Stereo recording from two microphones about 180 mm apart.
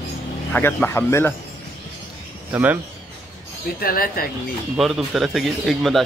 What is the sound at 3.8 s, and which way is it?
Speech, 55° left (ahead or behind).